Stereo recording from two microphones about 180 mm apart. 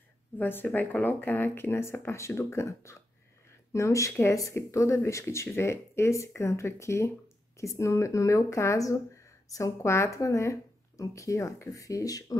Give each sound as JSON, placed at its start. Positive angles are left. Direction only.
{"t": 0.4, "sound": "speech", "side_deg": 10}